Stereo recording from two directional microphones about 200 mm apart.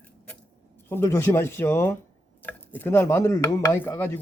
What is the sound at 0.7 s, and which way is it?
A man's voice, 10° left (ahead or behind).